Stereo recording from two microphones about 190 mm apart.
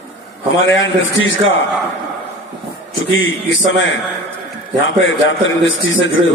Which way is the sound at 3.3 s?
80° left.